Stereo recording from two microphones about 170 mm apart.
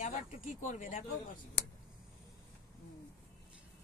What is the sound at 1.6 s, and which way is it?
Speech, 90° left.